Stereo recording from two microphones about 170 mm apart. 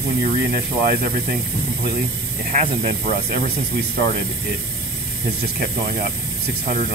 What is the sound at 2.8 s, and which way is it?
Speech, 60° right (ahead or behind).